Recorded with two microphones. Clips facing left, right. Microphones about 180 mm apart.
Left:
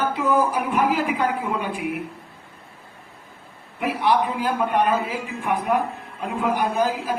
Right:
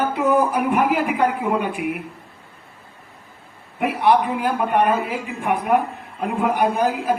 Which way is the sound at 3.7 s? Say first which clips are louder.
Right 4 dB; 55° right (ahead or behind).